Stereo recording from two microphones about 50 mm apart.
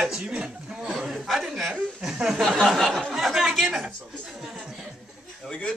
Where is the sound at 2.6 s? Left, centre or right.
Centre.